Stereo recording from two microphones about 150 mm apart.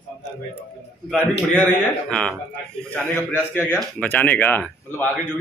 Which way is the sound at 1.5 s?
10° left (ahead or behind).